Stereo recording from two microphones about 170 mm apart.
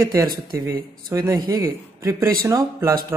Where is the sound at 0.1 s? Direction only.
20° right (ahead or behind).